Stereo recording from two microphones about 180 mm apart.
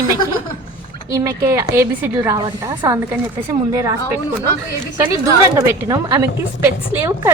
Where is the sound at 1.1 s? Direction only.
15° right (ahead or behind).